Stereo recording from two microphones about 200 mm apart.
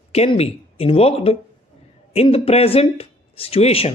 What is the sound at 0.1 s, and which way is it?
Speech, 30° left (ahead or behind).